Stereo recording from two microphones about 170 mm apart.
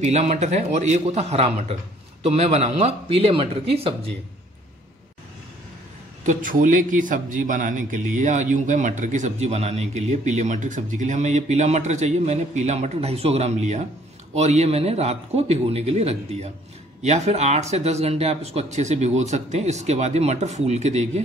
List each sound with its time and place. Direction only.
0.0 s speech: 40° right (ahead or behind)
6.2 s a man's voice: 50° right (ahead or behind)